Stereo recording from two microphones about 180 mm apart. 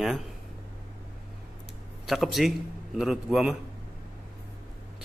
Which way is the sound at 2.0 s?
Centre (ahead or behind).